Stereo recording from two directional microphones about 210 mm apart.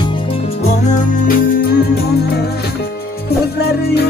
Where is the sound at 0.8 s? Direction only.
40° left (ahead or behind).